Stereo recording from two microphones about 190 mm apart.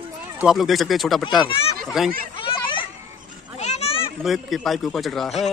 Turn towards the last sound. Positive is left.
turn(degrees=0)  # may be behind; listen again after turning